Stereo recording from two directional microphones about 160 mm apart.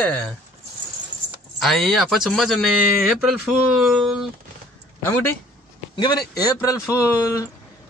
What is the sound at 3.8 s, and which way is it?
Speech, centre (ahead or behind).